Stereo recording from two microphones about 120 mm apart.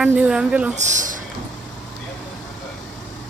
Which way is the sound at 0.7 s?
90° right.